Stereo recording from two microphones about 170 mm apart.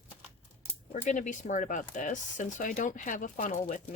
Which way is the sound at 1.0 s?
45° left (ahead or behind).